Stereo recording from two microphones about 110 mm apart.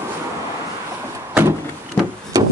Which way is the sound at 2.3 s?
30° right (ahead or behind).